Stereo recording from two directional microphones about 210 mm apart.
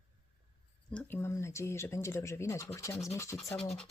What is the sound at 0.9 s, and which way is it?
Speech, 10° left (ahead or behind).